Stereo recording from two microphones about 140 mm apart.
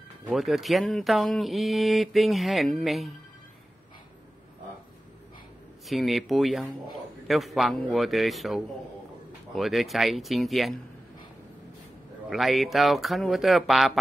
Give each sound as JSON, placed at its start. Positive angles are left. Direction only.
{"t": 0.3, "sound": "speech", "side_deg": 0}
{"t": 5.9, "sound": "speech", "side_deg": 0}
{"t": 12.3, "sound": "speech", "side_deg": 0}